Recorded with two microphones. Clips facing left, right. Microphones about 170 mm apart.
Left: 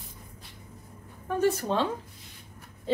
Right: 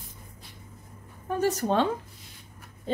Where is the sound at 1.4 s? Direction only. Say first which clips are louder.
Right 1 dB; 50° right (ahead or behind).